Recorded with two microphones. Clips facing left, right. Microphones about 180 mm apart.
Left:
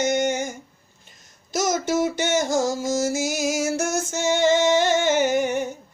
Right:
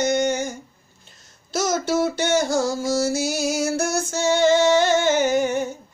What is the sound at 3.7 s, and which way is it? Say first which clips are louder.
Female singing: right 1 dB; 20° left (ahead or behind).